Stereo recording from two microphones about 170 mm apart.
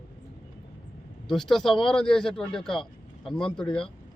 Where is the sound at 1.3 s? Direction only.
Centre (ahead or behind).